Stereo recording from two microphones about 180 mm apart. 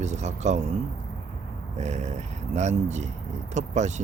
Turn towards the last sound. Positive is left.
turn(degrees=-40)  # may be behind; listen again after turning